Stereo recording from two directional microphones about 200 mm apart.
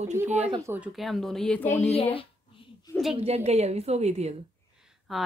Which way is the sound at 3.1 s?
30° right (ahead or behind).